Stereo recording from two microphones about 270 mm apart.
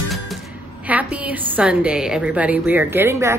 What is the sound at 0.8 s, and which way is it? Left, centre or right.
A woman's voice, centre.